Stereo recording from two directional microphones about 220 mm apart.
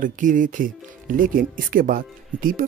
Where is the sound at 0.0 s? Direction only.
35° right (ahead or behind).